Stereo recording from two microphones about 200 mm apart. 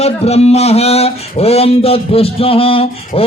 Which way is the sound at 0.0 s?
30° left (ahead or behind).